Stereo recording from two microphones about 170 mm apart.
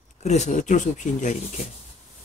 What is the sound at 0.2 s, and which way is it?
Speech, 40° left (ahead or behind).